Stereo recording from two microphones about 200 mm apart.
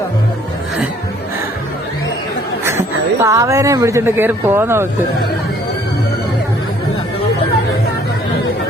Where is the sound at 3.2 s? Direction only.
15° right (ahead or behind).